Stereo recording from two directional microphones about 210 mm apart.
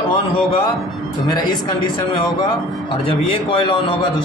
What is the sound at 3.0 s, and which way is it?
Speech, 25° left (ahead or behind).